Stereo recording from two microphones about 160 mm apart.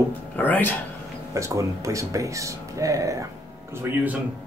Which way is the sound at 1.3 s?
20° right (ahead or behind).